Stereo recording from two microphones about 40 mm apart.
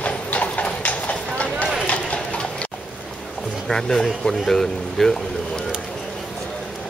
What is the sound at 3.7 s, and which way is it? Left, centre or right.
Speech, centre.